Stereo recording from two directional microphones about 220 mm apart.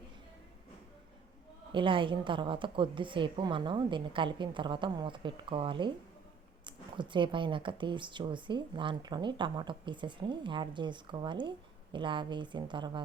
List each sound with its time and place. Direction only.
1.7 s speech: 20° right (ahead or behind)